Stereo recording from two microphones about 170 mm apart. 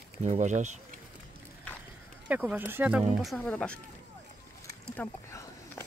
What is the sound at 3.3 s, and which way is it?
Speech, 5° left (ahead or behind).